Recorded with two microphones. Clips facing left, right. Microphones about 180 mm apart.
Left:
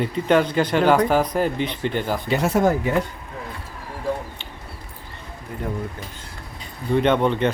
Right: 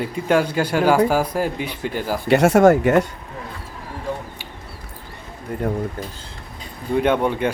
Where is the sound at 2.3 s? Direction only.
80° right.